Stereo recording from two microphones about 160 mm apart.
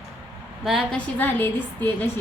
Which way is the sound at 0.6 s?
Centre (ahead or behind).